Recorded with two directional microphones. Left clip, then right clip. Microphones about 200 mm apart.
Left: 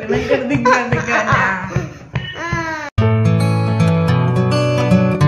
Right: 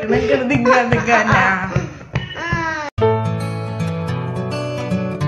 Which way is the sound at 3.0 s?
Centre (ahead or behind).